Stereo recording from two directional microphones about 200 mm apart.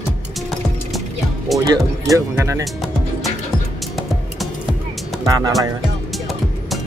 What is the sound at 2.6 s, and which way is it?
Music, centre (ahead or behind).